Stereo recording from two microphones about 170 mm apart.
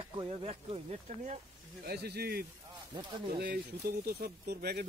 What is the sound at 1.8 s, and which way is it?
Speech, 70° right (ahead or behind).